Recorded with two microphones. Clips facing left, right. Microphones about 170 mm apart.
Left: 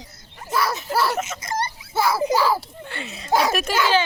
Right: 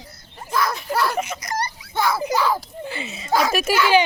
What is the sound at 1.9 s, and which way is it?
A child's voice, 5° left (ahead or behind).